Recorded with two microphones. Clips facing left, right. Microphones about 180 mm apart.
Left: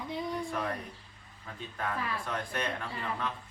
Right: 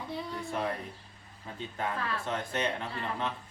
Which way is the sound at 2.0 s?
15° left (ahead or behind).